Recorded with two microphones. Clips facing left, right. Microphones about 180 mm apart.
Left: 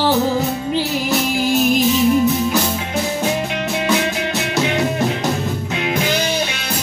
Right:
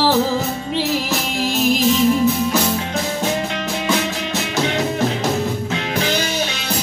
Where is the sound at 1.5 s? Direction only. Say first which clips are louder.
Left 2 dB; centre (ahead or behind).